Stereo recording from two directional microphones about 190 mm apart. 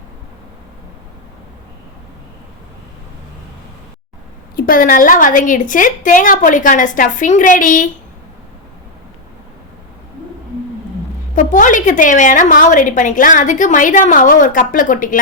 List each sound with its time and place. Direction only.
4.5 s a woman's voice: 50° left (ahead or behind)
11.3 s a woman's voice: 40° left (ahead or behind)